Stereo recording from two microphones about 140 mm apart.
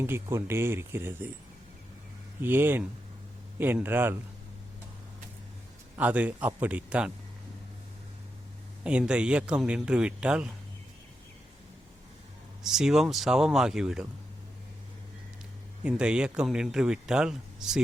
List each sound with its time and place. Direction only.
0.0 s speech: 15° right (ahead or behind)
2.4 s speech: 15° right (ahead or behind)
6.0 s speech: 10° right (ahead or behind)
8.8 s speech: 10° right (ahead or behind)
12.6 s speech: 5° right (ahead or behind)
15.8 s speech: 5° right (ahead or behind)